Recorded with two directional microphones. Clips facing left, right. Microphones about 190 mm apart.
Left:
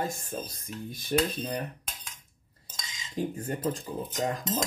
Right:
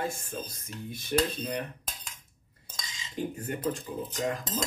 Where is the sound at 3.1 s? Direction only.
35° left (ahead or behind).